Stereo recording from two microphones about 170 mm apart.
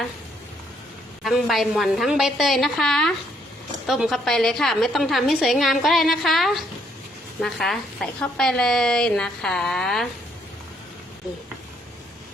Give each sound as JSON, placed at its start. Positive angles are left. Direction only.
{"t": 1.2, "sound": "a woman's voice", "side_deg": 0}